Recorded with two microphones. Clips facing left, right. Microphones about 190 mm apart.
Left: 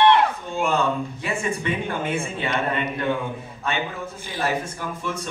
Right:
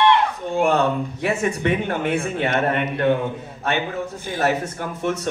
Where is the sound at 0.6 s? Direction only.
60° right (ahead or behind).